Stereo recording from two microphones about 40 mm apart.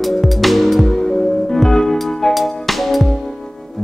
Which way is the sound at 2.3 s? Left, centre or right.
Centre.